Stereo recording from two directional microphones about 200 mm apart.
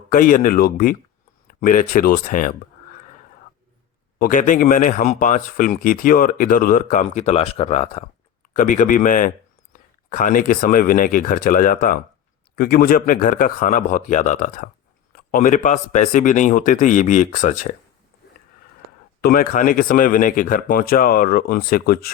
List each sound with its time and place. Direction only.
0.1 s a man's voice: 40° left (ahead or behind)
4.2 s a man's voice: 40° left (ahead or behind)
19.2 s a man's voice: 45° left (ahead or behind)